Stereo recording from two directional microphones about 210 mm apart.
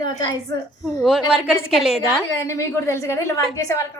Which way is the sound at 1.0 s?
5° right (ahead or behind).